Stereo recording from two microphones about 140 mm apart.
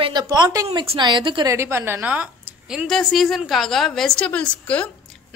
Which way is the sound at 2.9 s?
Centre (ahead or behind).